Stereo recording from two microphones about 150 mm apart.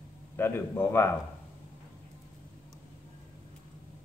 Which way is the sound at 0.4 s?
15° left (ahead or behind).